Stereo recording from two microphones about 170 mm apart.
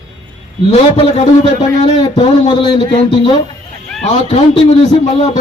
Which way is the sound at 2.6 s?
25° left (ahead or behind).